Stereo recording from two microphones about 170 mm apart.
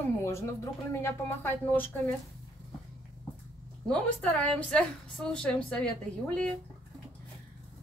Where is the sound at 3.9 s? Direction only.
5° left (ahead or behind).